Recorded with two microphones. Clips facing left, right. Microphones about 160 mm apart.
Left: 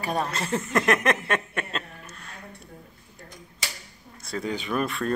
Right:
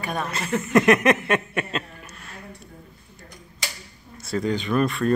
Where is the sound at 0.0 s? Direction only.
35° left (ahead or behind).